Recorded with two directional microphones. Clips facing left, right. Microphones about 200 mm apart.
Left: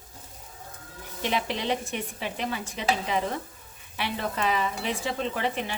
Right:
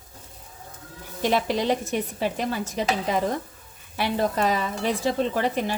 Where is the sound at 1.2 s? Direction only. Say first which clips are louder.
Right 6 dB; 40° right (ahead or behind).